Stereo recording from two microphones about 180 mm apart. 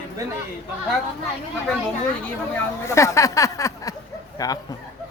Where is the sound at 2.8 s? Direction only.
15° left (ahead or behind).